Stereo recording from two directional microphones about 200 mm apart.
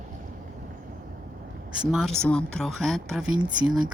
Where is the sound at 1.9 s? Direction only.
Centre (ahead or behind).